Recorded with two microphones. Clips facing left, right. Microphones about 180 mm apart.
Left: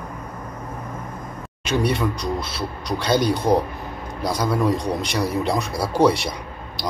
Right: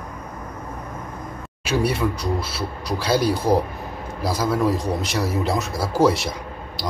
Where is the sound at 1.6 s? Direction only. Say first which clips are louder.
Even; 5° right (ahead or behind).